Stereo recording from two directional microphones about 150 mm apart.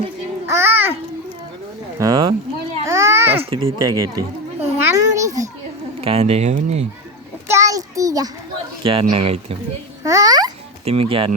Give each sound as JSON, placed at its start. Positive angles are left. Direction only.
{"t": 0.4, "sound": "a sound", "side_deg": -15}
{"t": 2.0, "sound": "speech", "side_deg": -25}
{"t": 2.8, "sound": "a sound", "side_deg": -20}
{"t": 3.6, "sound": "speech", "side_deg": -25}
{"t": 4.8, "sound": "a sound", "side_deg": -20}
{"t": 6.0, "sound": "speech", "side_deg": -40}
{"t": 7.4, "sound": "child singing", "side_deg": -20}
{"t": 8.8, "sound": "speech", "side_deg": -35}
{"t": 10.0, "sound": "babbling", "side_deg": -20}
{"t": 10.8, "sound": "speech", "side_deg": -40}